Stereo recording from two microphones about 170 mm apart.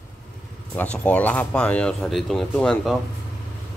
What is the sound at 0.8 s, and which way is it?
Speech, 10° left (ahead or behind).